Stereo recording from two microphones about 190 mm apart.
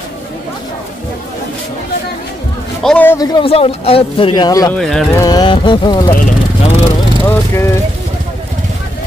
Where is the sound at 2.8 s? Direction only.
5° left (ahead or behind).